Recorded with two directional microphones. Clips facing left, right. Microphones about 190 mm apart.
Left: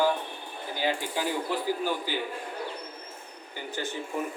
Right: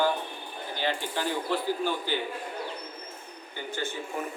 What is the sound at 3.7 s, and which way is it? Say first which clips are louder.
Speech: even; 35° left (ahead or behind).